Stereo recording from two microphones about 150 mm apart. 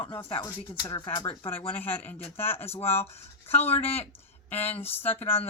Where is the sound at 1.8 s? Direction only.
15° left (ahead or behind).